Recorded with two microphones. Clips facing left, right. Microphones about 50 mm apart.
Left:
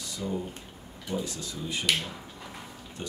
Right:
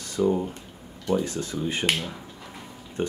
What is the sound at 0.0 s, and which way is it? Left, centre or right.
Speech, right.